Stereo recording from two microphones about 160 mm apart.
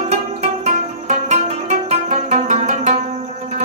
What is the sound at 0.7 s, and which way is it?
Music, 45° right (ahead or behind).